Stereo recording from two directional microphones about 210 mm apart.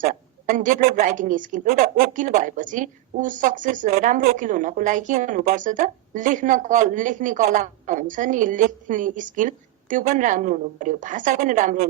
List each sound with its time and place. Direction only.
0.0 s a woman's voice: 40° right (ahead or behind)